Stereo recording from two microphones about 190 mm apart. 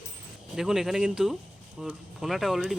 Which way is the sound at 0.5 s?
Centre (ahead or behind).